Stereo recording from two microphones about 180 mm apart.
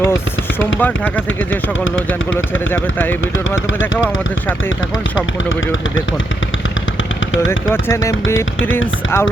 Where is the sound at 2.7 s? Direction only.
10° left (ahead or behind).